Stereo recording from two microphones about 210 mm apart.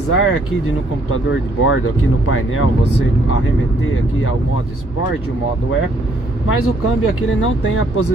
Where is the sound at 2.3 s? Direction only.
80° left.